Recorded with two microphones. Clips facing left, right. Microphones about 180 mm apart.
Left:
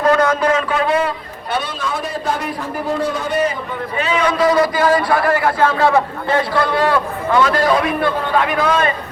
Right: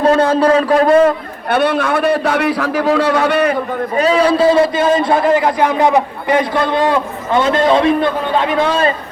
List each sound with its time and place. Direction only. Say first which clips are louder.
0.0 s a man's voice: right 3 dB; 30° right (ahead or behind); by 3.6 s 65° right (ahead or behind)
3.9 s a man's voice: right 6 dB; 35° right (ahead or behind)